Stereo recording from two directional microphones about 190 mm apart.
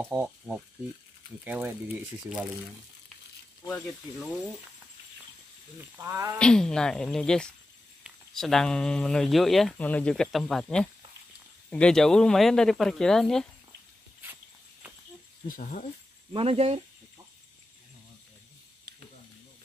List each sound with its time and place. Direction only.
0.1 s speech: 10° right (ahead or behind)
3.6 s speech: 5° left (ahead or behind)
5.8 s speech: 15° right (ahead or behind)
6.3 s speech: 5° left (ahead or behind)
15.4 s speech: 45° left (ahead or behind)
16.3 s speech: 30° right (ahead or behind)